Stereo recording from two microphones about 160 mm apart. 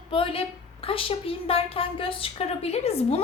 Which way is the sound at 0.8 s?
35° left (ahead or behind).